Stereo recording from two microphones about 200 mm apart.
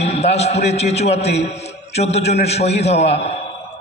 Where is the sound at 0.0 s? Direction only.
30° left (ahead or behind).